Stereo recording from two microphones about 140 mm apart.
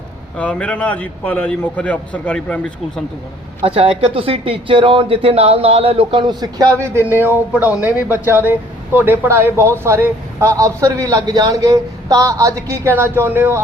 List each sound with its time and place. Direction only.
0.3 s a man's voice: 10° left (ahead or behind)
3.8 s speech: 45° right (ahead or behind); by 7.0 s 20° right (ahead or behind)
7.3 s a man's voice: 10° right (ahead or behind)